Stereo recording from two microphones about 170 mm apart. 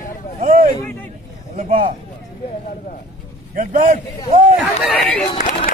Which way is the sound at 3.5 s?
50° right (ahead or behind).